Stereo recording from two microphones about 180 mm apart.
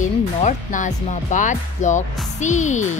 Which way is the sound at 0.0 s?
45° left (ahead or behind).